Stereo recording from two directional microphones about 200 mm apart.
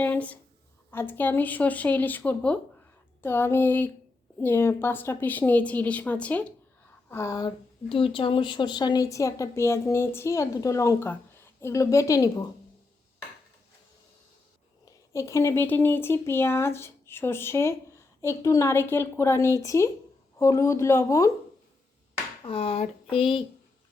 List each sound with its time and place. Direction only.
0.0 s a woman's voice: 10° left (ahead or behind)
14.8 s speech: 15° left (ahead or behind)
22.4 s speech: 30° left (ahead or behind)